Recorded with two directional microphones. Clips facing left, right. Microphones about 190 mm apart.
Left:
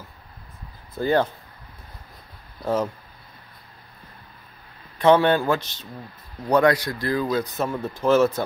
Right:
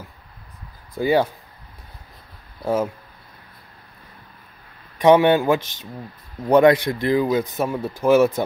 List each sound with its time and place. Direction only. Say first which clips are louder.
0.9 s speech: right 2 dB; 10° right (ahead or behind)
2.6 s speech: right 2 dB; 10° right (ahead or behind)
4.9 s speech: right 3 dB; 15° right (ahead or behind)